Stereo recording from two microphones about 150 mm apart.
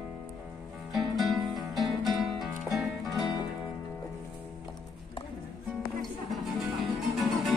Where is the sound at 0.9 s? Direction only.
Centre (ahead or behind).